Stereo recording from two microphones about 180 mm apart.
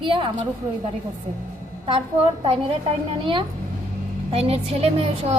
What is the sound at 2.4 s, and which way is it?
Speech, 30° right (ahead or behind).